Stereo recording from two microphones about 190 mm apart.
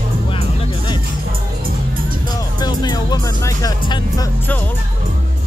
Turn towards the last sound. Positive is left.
turn(degrees=25)  # may be behind; listen again after turning